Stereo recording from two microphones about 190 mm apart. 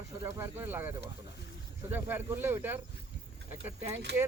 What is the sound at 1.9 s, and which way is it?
Speech, 10° right (ahead or behind).